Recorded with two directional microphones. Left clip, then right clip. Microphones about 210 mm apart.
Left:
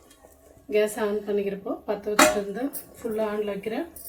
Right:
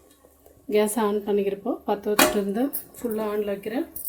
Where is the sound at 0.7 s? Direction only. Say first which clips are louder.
Right 2 dB; 40° right (ahead or behind).